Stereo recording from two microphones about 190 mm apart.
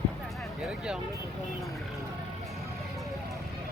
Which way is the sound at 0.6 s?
5° right (ahead or behind).